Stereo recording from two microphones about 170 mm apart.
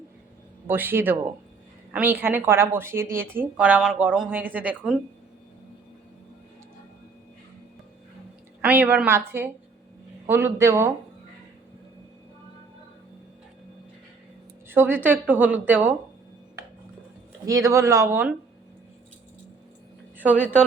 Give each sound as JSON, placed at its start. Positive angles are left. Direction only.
{"t": 0.7, "sound": "a woman's voice", "side_deg": -10}
{"t": 8.6, "sound": "a woman's voice", "side_deg": -10}
{"t": 14.7, "sound": "a woman's voice", "side_deg": -10}
{"t": 17.4, "sound": "a woman's voice", "side_deg": -20}
{"t": 20.1, "sound": "a woman's voice", "side_deg": -10}